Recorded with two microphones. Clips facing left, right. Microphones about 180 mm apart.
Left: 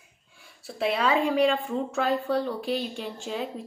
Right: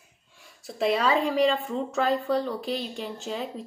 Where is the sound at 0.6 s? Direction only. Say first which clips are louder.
Right 2 dB; 5° left (ahead or behind).